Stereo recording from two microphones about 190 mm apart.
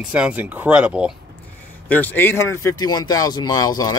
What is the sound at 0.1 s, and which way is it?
Speech, 5° right (ahead or behind).